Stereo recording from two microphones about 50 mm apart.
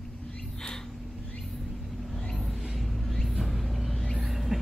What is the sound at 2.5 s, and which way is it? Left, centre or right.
Vehicle, centre.